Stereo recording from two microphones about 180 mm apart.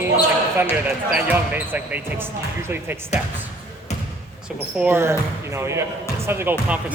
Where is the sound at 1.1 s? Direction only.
10° right (ahead or behind).